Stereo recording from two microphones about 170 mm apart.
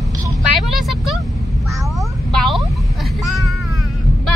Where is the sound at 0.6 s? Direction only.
Centre (ahead or behind).